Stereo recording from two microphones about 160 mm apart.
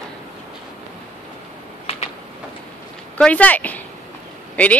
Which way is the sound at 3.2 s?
10° left (ahead or behind).